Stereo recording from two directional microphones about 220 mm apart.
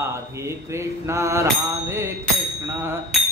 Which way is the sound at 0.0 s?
10° right (ahead or behind).